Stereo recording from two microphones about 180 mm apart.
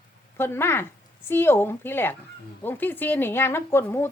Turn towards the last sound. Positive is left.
turn(degrees=15)  # may be behind; listen again after turning